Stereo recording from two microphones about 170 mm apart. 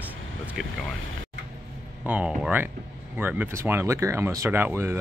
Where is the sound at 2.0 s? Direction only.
5° right (ahead or behind).